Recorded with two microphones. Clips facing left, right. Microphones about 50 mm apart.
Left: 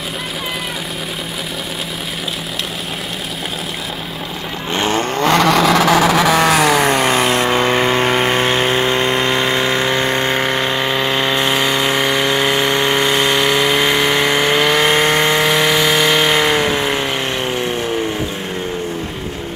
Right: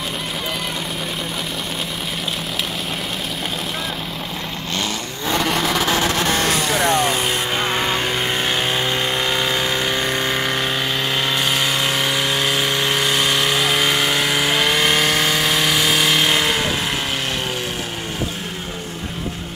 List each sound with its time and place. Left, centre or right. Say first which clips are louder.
4.7 s vehicle: left 9 dB; left
5.2 s vehicle: left 7 dB; left; by 12.1 s centre
12.1 s a sound: left 5 dB; centre
13.1 s vehicle: left 4 dB; left
13.4 s vehicle: left 4 dB; centre
14.6 s a sound: left 4 dB; left
15.4 s power tool: left 5 dB; centre
15.7 s vehicle: left 4 dB; centre; by 17.0 s left